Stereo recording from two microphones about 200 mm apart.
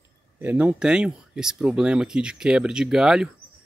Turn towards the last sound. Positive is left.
turn(degrees=-5)  # may be behind; listen again after turning